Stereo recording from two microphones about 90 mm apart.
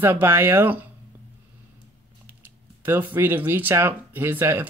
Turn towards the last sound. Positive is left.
turn(degrees=-25)  # may be behind; listen again after turning